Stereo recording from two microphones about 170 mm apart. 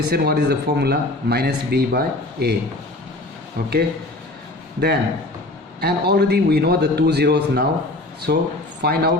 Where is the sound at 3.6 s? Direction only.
70° right (ahead or behind).